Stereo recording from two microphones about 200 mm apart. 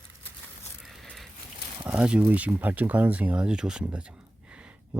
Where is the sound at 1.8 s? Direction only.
5° right (ahead or behind).